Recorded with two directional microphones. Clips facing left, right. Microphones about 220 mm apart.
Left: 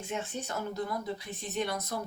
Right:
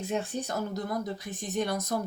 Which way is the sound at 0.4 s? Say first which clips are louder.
Right 2 dB; 40° right (ahead or behind).